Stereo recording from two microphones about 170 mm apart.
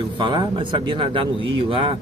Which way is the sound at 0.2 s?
25° right (ahead or behind).